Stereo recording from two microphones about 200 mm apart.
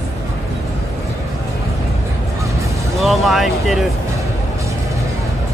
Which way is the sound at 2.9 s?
Centre (ahead or behind).